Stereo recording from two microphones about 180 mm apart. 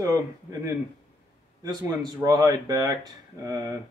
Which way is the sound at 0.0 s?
15° right (ahead or behind).